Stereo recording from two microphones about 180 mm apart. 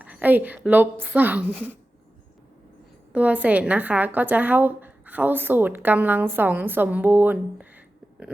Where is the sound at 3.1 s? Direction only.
10° right (ahead or behind).